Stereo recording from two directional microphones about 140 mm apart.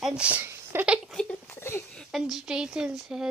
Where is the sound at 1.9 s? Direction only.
Centre (ahead or behind).